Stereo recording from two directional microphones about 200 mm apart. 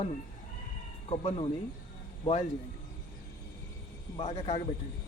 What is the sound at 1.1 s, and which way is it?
Speech, 30° left (ahead or behind).